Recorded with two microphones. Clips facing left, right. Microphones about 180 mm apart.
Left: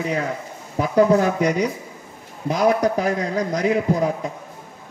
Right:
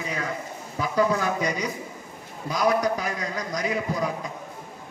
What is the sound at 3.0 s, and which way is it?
Speech, 60° left (ahead or behind).